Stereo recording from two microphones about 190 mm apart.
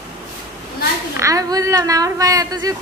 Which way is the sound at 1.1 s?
15° right (ahead or behind).